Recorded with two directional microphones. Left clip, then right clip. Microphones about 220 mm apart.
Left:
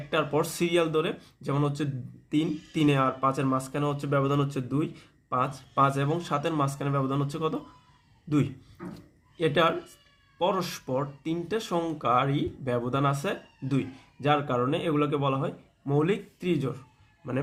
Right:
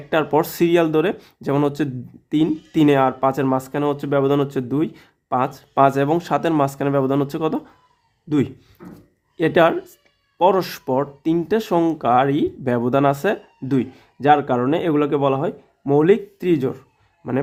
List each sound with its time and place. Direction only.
0.1 s speech: 45° right (ahead or behind)
9.4 s speech: 45° right (ahead or behind)